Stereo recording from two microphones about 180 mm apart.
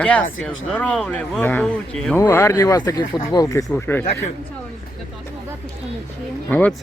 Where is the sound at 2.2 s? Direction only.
15° left (ahead or behind).